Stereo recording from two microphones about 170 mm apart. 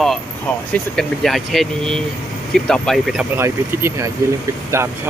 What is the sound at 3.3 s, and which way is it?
Speech, 15° right (ahead or behind).